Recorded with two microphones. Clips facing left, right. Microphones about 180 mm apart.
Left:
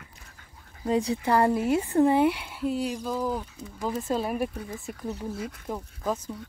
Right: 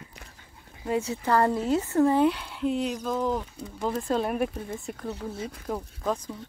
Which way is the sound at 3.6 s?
30° right (ahead or behind).